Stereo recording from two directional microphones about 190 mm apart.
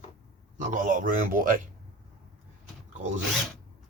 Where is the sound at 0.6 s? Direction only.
40° right (ahead or behind).